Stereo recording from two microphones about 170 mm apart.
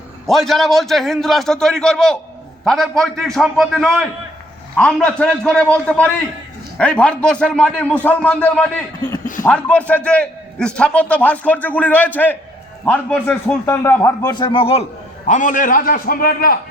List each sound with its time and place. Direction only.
0.3 s a man's voice: centre (ahead or behind); by 14.8 s 35° left (ahead or behind)
15.3 s a man's voice: 50° left (ahead or behind)